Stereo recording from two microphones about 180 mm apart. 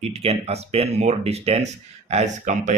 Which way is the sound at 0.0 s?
35° right (ahead or behind).